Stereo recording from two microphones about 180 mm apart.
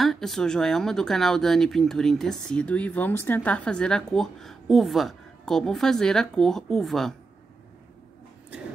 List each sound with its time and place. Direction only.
0.0 s speech: centre (ahead or behind)